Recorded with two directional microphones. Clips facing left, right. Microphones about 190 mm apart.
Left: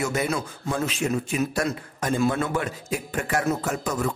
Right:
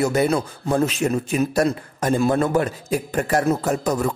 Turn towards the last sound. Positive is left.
turn(degrees=-35)  # may be behind; listen again after turning